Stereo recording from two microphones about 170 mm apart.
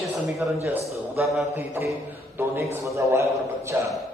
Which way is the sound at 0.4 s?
5° right (ahead or behind).